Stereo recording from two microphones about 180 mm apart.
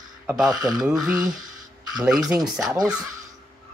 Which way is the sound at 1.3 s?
20° right (ahead or behind).